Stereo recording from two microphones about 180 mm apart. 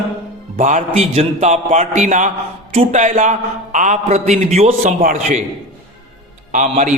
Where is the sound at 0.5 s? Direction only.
45° right (ahead or behind).